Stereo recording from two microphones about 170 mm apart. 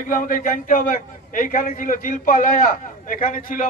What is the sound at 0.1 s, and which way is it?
A man's voice, 50° left (ahead or behind).